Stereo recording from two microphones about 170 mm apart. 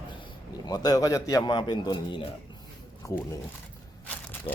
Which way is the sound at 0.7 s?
25° left (ahead or behind).